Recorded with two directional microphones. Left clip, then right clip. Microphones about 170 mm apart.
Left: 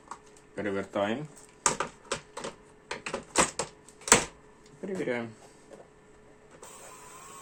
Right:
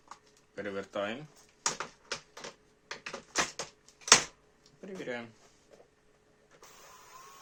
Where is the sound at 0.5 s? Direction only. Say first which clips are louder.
Left 5 dB; 30° right (ahead or behind).